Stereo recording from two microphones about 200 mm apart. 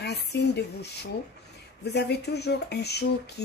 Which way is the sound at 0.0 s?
55° left (ahead or behind).